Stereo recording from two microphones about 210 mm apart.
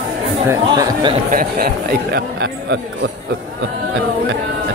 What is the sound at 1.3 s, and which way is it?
Speech, 45° right (ahead or behind).